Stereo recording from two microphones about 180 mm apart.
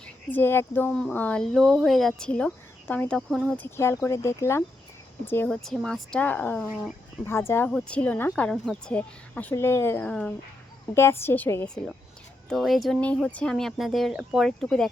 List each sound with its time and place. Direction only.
0.0 s speech: 10° left (ahead or behind)
3.8 s speech: 15° left (ahead or behind)
12.5 s speech: centre (ahead or behind)